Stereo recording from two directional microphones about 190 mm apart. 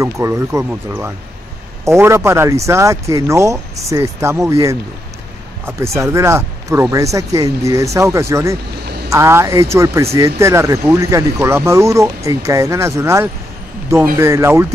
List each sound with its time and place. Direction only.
0.0 s speech: 15° right (ahead or behind)